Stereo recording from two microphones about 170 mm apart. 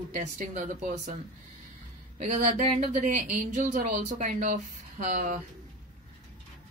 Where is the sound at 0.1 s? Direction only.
45° right (ahead or behind).